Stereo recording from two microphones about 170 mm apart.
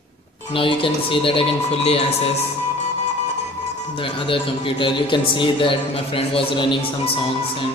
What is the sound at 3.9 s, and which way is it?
A man's voice, 30° left (ahead or behind).